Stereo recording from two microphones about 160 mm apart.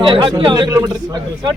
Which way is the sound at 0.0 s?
30° right (ahead or behind).